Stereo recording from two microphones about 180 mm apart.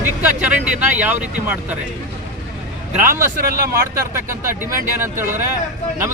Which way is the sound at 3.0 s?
15° right (ahead or behind).